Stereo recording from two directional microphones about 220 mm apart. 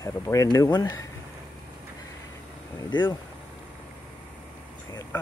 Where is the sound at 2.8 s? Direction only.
20° left (ahead or behind).